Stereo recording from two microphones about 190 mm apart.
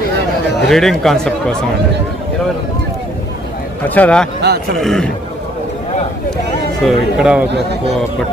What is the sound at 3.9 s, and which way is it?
Speech, 5° left (ahead or behind).